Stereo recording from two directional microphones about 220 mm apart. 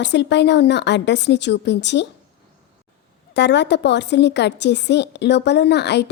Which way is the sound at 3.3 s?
50° left (ahead or behind).